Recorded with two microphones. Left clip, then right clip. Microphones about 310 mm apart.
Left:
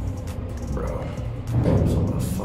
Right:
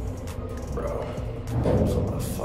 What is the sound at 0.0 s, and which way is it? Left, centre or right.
Music, centre.